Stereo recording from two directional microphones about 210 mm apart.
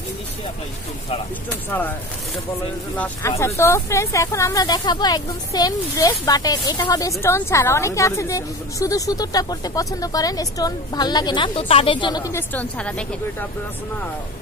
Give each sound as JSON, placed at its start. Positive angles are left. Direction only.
{"t": 1.7, "sound": "speech", "side_deg": 10}
{"t": 3.0, "sound": "speech", "side_deg": 15}